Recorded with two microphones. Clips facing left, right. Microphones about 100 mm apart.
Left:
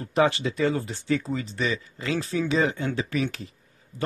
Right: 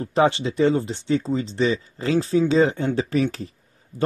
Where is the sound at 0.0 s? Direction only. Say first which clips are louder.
Right 3 dB; 30° right (ahead or behind).